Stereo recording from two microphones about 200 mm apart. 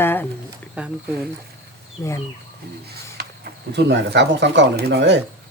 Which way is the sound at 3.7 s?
60° right (ahead or behind).